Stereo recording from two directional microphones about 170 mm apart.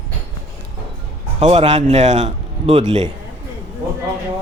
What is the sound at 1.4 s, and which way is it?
A man's voice, 35° right (ahead or behind).